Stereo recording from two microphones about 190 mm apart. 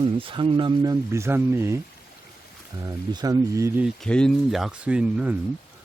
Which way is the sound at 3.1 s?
20° right (ahead or behind).